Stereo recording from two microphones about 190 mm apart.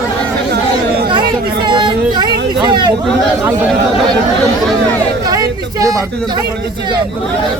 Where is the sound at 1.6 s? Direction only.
25° right (ahead or behind).